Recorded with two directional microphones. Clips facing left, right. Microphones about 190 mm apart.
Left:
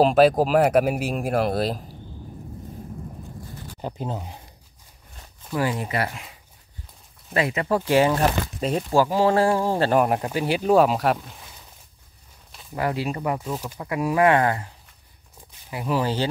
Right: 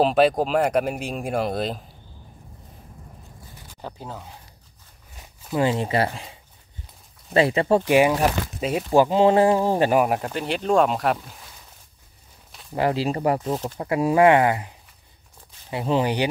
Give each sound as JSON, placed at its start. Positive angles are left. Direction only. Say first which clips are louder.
{"t": 0.0, "sound": "speech", "louder": "left 2 dB", "side_deg": 0}
{"t": 3.8, "sound": "speech", "louder": "left 5 dB", "side_deg": 20}
{"t": 5.1, "sound": "zipper", "louder": "right 1 dB", "side_deg": -10}
{"t": 5.5, "sound": "speech", "louder": "right 3 dB", "side_deg": -25}
{"t": 7.8, "sound": "speech", "louder": "right 1 dB", "side_deg": -15}
{"t": 8.9, "sound": "speech", "louder": "right 3 dB", "side_deg": -20}
{"t": 9.9, "sound": "speech", "louder": "even", "side_deg": 0}
{"t": 12.7, "sound": "speech", "louder": "right 3 dB", "side_deg": -30}